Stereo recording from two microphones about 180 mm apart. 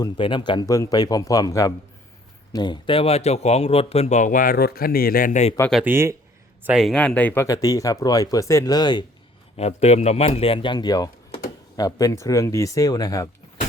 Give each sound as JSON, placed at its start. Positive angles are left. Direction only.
{"t": 0.0, "sound": "speech", "side_deg": 25}
{"t": 5.7, "sound": "speech", "side_deg": -10}
{"t": 6.7, "sound": "speech", "side_deg": 0}
{"t": 9.6, "sound": "speech", "side_deg": 35}